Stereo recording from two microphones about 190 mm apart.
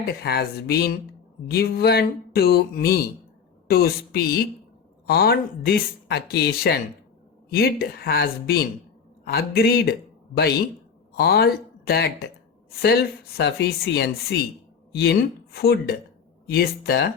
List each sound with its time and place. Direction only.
0.1 s a man's voice: 55° left (ahead or behind)